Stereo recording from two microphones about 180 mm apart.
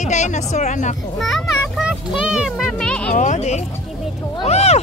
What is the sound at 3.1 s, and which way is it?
Speech, 45° left (ahead or behind).